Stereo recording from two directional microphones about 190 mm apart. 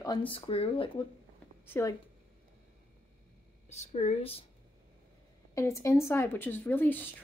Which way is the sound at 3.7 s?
35° left (ahead or behind).